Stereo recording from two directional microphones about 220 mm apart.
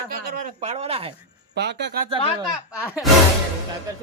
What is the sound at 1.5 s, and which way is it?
Speech, 50° right (ahead or behind).